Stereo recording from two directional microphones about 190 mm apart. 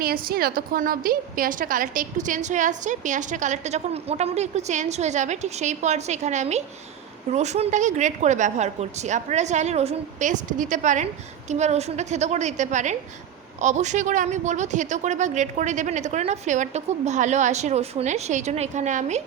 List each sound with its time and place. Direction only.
0.0 s a woman's voice: 50° right (ahead or behind)